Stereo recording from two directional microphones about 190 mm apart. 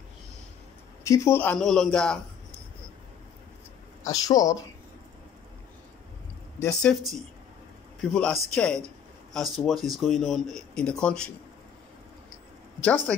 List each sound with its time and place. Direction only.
1.0 s speech: 15° left (ahead or behind)
4.0 s speech: 20° left (ahead or behind)
6.6 s speech: 5° left (ahead or behind)
8.0 s speech: 5° left (ahead or behind)
12.8 s speech: 5° left (ahead or behind)